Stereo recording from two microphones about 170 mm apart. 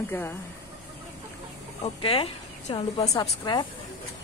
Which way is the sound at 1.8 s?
35° left (ahead or behind).